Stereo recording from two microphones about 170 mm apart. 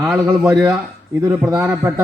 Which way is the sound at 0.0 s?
Centre (ahead or behind).